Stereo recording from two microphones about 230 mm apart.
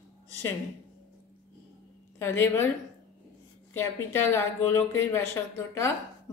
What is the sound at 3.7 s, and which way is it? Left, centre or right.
Speech, centre.